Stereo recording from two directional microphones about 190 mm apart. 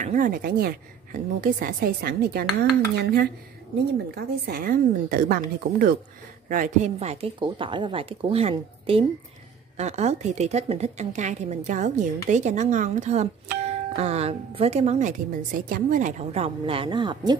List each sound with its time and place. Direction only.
0.0 s a woman's voice: 45° right (ahead or behind); by 17.2 s 25° right (ahead or behind)